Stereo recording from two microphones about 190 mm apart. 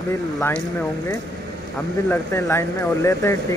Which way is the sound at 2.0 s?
15° left (ahead or behind).